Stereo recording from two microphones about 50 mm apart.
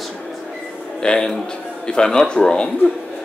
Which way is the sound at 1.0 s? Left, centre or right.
Centre.